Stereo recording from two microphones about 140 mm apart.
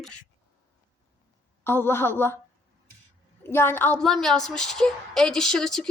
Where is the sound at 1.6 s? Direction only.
15° left (ahead or behind).